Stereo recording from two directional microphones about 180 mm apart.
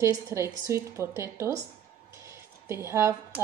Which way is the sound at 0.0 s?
15° right (ahead or behind).